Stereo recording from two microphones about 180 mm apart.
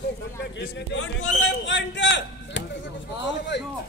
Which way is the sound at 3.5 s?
75° left (ahead or behind).